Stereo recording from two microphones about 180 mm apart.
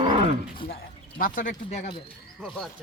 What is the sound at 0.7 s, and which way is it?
Speech, 55° left (ahead or behind).